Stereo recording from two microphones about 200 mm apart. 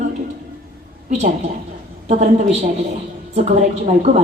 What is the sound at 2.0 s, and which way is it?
A woman's voice, 35° right (ahead or behind).